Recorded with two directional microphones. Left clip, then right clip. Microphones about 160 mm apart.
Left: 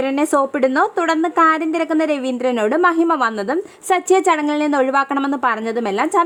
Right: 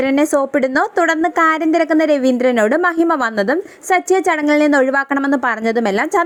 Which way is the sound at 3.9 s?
10° right (ahead or behind).